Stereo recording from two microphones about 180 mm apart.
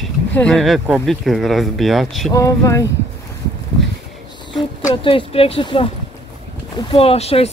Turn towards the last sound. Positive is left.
turn(degrees=35)  # may be behind; listen again after turning